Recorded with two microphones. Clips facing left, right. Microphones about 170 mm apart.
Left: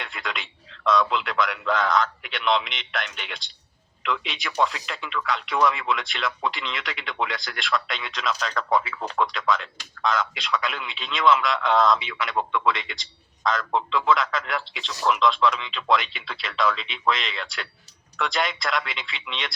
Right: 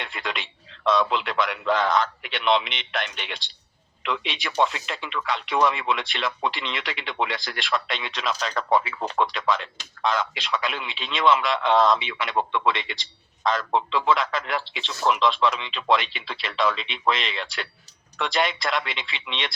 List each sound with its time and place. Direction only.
0.0 s speech: centre (ahead or behind)
12.3 s speech: 25° right (ahead or behind)
12.6 s a man's voice: centre (ahead or behind)